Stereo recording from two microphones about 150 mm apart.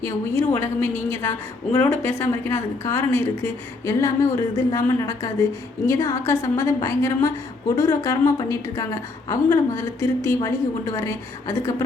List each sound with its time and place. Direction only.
0.0 s a woman's voice: 15° left (ahead or behind)